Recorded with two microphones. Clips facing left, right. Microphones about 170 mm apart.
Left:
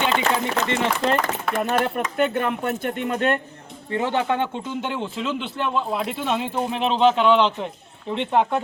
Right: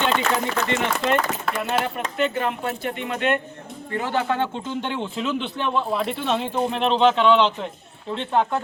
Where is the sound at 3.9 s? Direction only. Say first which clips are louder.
Left 2 dB; 25° left (ahead or behind).